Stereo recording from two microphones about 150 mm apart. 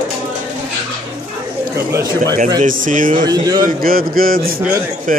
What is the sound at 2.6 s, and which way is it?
Speech, 60° right (ahead or behind).